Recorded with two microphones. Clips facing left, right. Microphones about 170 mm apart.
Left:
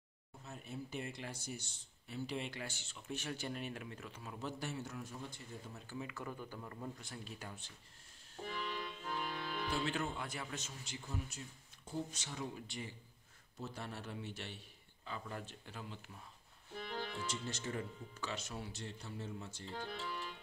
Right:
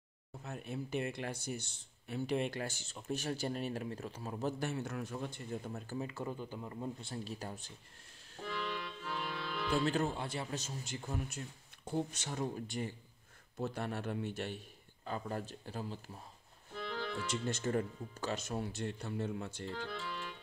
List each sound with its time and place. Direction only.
0.4 s speech: 65° right (ahead or behind); by 7.7 s 40° right (ahead or behind)
8.7 s music: 45° left (ahead or behind)
9.7 s speech: 40° right (ahead or behind)
13.6 s speech: 60° right (ahead or behind); by 16.2 s 35° right (ahead or behind)
17.3 s speech: 55° right (ahead or behind)